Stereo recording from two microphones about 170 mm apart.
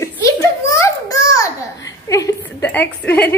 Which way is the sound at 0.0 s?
15° left (ahead or behind).